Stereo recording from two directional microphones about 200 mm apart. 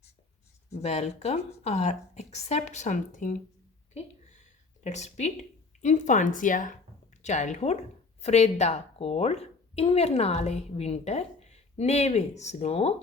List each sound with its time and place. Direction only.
0.7 s a woman's voice: 35° left (ahead or behind)
3.9 s a sound: 35° left (ahead or behind)
5.8 s a woman's voice: 35° left (ahead or behind)